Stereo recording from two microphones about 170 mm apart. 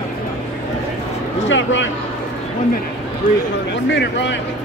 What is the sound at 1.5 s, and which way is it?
Speech, 90° left.